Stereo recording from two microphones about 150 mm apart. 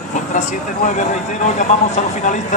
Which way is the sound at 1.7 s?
50° left (ahead or behind).